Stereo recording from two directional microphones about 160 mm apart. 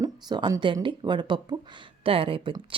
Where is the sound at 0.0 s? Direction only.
25° right (ahead or behind).